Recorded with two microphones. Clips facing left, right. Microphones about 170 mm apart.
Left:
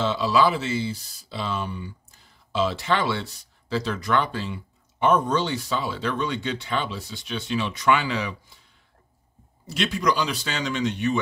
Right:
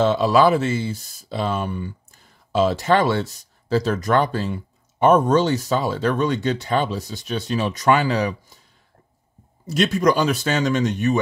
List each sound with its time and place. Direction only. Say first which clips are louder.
0.0 s speech: right 5 dB; 50° right (ahead or behind)
9.7 s speech: right 6 dB; 45° right (ahead or behind)